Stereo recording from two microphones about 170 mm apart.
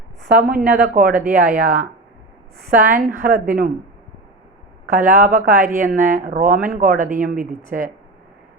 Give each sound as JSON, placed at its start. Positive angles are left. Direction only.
{"t": 0.2, "sound": "a woman's voice", "side_deg": -65}
{"t": 2.9, "sound": "speech", "side_deg": -50}
{"t": 4.9, "sound": "speech", "side_deg": -55}